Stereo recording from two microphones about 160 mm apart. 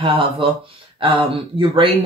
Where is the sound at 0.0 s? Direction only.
30° right (ahead or behind).